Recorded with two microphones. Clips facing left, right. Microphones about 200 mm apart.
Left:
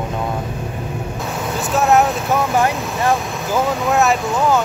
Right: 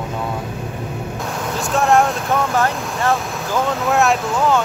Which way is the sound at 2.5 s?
15° left (ahead or behind).